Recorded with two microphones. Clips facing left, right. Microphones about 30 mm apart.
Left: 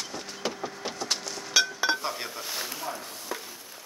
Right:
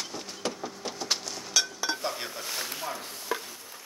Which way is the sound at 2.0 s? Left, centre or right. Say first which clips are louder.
Even; centre.